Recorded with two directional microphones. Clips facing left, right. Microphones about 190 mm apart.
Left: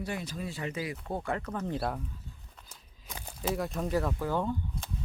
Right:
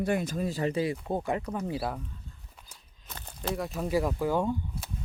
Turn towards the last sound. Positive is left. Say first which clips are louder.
# right 3 dB
turn(degrees=-10)  # may be behind; listen again after turning